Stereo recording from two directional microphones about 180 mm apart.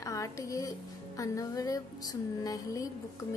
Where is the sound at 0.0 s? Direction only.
15° left (ahead or behind).